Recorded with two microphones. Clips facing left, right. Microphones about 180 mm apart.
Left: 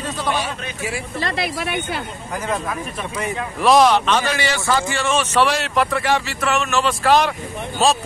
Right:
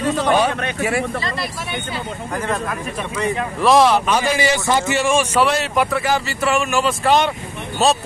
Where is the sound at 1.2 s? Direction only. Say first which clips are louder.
Left 3 dB; 70° left (ahead or behind).